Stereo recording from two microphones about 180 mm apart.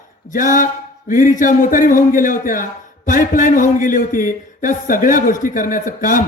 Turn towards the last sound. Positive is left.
turn(degrees=50)  # may be behind; listen again after turning